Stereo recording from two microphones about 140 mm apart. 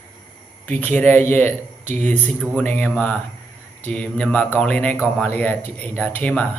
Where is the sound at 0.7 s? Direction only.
10° left (ahead or behind).